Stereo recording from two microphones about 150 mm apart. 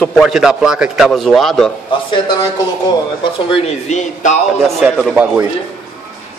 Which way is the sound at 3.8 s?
50° left (ahead or behind).